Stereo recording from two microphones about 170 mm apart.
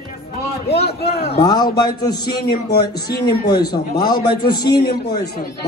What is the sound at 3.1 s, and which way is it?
Speech, 65° left (ahead or behind).